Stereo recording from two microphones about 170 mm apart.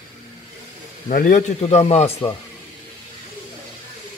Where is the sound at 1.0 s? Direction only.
50° left (ahead or behind).